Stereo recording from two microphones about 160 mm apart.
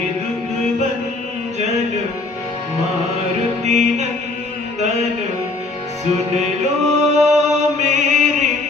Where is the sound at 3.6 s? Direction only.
45° right (ahead or behind).